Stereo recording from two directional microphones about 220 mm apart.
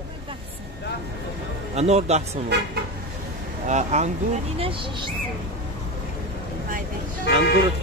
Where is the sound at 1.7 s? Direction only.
30° right (ahead or behind).